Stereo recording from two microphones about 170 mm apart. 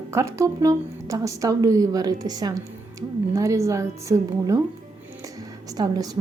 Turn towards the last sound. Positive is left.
turn(degrees=-20)  # may be behind; listen again after turning